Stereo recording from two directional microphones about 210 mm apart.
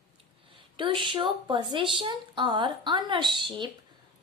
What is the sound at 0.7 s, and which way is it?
A woman's voice, 25° right (ahead or behind).